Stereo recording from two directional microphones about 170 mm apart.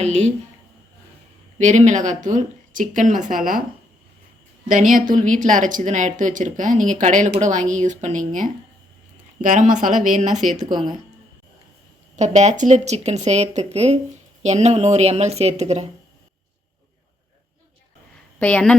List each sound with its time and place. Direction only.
0.0 s a woman's voice: 40° right (ahead or behind)
1.5 s speech: 45° right (ahead or behind)
4.7 s speech: 50° right (ahead or behind)
12.1 s speech: 40° right (ahead or behind)
18.3 s a woman's voice: 10° left (ahead or behind)